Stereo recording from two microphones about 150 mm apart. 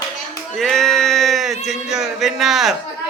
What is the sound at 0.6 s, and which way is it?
Speech, centre (ahead or behind).